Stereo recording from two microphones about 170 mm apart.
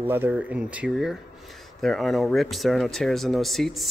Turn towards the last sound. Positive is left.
turn(degrees=0)  # may be behind; listen again after turning